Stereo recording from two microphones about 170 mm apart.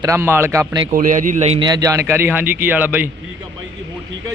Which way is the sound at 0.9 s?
50° right (ahead or behind).